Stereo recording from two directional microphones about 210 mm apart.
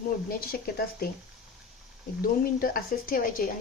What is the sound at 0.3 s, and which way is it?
Speech, 45° left (ahead or behind).